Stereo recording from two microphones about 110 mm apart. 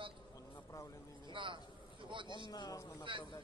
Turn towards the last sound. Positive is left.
turn(degrees=30)  # may be behind; listen again after turning